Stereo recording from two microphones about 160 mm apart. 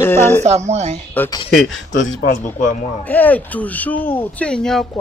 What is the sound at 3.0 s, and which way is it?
Speech, 10° left (ahead or behind).